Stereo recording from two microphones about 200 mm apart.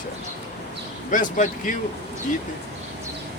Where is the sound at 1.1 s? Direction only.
40° left (ahead or behind).